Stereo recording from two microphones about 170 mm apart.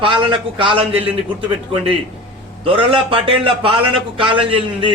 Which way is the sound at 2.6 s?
30° right (ahead or behind).